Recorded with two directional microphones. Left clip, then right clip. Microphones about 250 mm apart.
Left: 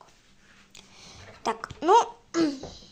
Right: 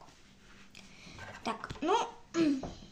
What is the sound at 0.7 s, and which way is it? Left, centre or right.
Babbling, left.